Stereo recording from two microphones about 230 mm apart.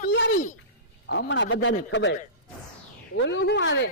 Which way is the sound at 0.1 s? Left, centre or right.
Left.